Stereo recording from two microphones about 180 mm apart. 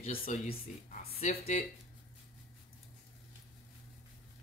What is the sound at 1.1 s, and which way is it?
Speech, 40° left (ahead or behind).